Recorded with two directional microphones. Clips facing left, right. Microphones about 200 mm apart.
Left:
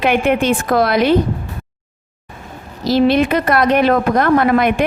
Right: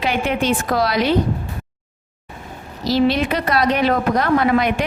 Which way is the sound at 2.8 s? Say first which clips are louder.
Left 4 dB; 55° left (ahead or behind).